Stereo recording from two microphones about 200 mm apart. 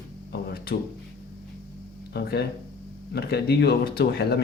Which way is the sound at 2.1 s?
55° left (ahead or behind).